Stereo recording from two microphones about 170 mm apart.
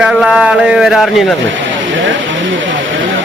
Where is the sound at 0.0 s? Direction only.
Centre (ahead or behind).